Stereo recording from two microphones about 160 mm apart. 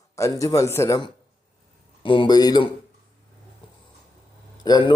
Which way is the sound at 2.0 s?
30° left (ahead or behind).